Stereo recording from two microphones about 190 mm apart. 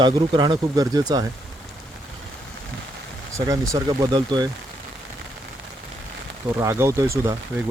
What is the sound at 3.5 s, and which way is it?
Speech, 20° right (ahead or behind).